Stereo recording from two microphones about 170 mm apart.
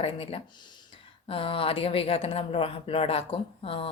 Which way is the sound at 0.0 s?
35° left (ahead or behind).